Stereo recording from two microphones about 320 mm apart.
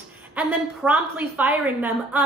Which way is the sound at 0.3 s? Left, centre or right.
Centre.